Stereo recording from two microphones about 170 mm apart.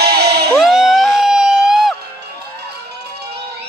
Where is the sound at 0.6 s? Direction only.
Centre (ahead or behind).